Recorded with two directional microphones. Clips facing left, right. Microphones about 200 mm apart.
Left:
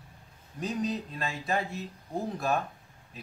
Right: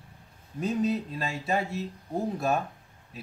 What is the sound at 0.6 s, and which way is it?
Speech, 5° right (ahead or behind).